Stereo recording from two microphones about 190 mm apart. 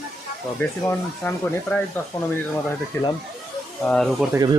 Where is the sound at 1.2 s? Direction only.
10° left (ahead or behind).